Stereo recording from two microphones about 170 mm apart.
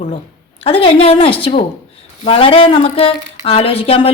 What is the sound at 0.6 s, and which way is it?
A woman's voice, 35° left (ahead or behind).